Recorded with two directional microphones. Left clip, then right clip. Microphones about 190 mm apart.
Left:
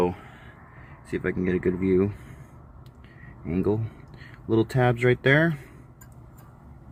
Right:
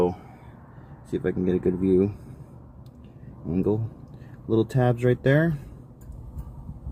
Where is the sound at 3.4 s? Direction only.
30° left (ahead or behind).